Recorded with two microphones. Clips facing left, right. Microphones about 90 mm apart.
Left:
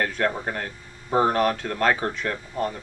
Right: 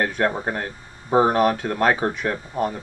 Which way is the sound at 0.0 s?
20° right (ahead or behind).